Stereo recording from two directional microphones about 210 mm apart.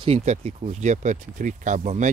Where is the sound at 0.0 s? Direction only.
30° right (ahead or behind).